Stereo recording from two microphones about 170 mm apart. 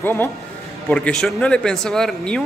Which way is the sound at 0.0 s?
10° left (ahead or behind).